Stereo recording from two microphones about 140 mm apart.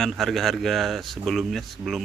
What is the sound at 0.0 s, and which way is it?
Speech, centre (ahead or behind).